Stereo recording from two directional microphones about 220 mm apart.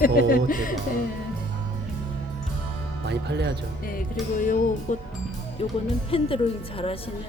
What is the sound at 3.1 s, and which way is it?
Speech, 50° right (ahead or behind).